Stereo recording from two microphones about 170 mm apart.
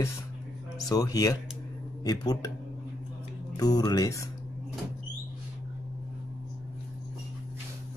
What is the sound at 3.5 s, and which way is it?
Speech, 20° left (ahead or behind).